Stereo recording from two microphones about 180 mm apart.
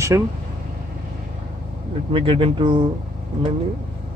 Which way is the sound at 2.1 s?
30° right (ahead or behind).